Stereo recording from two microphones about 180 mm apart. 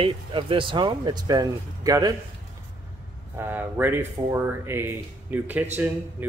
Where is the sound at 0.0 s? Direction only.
30° right (ahead or behind).